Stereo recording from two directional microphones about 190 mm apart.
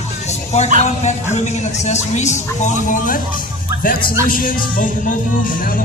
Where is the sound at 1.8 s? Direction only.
35° left (ahead or behind).